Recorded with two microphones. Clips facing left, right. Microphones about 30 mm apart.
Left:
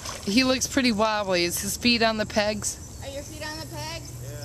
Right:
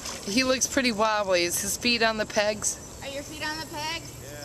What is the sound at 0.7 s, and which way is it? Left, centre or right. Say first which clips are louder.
Speech: left 1 dB; centre.